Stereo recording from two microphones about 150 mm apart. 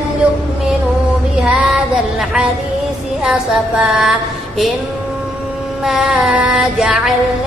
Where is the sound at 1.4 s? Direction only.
Centre (ahead or behind).